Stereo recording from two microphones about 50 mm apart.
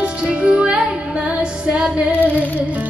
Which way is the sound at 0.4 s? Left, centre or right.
Right.